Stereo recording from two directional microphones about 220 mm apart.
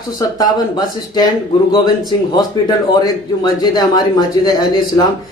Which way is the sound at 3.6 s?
15° left (ahead or behind).